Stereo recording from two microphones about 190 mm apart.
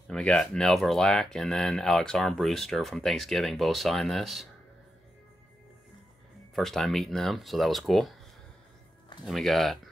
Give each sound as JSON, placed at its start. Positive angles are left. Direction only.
{"t": 0.1, "sound": "speech", "side_deg": 5}
{"t": 6.5, "sound": "speech", "side_deg": 0}
{"t": 9.2, "sound": "speech", "side_deg": 0}